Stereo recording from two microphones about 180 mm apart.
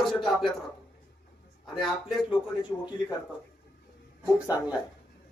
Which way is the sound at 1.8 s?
Centre (ahead or behind).